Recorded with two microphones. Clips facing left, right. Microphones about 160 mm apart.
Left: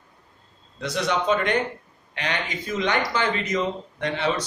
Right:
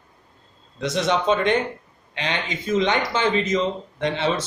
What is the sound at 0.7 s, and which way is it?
Speech, 25° right (ahead or behind).